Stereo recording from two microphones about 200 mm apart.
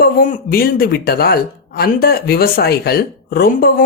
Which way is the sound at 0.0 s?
45° left (ahead or behind).